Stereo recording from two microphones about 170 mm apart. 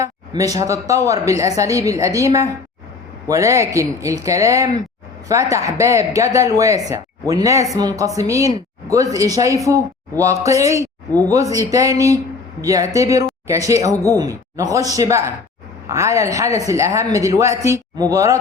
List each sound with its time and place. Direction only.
0.0 s a woman's voice: 20° right (ahead or behind)